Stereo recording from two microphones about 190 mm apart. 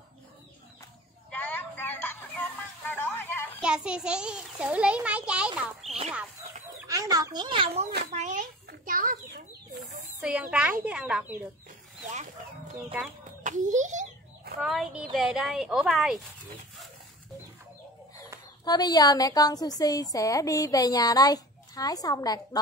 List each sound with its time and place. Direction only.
1.3 s a sound: 10° left (ahead or behind)
3.6 s a child's voice: 5° right (ahead or behind)
5.9 s chicken: 35° right (ahead or behind)
6.9 s speech: 20° right (ahead or behind)
8.1 s a sound: 40° right (ahead or behind)
10.2 s a woman's voice: 5° right (ahead or behind)
13.4 s a sound: 40° right (ahead or behind)
14.6 s a child's voice: centre (ahead or behind)
18.6 s speech: 20° left (ahead or behind)